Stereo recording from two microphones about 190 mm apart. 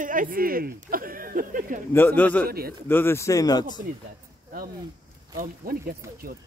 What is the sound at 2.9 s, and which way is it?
Speech, 10° left (ahead or behind).